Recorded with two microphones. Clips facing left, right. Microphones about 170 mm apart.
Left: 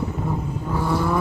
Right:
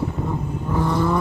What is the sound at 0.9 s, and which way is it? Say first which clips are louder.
Vehicle: right 1 dB; 10° left (ahead or behind).